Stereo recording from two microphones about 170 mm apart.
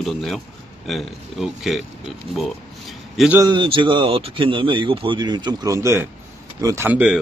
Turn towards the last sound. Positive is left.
turn(degrees=-5)  # may be behind; listen again after turning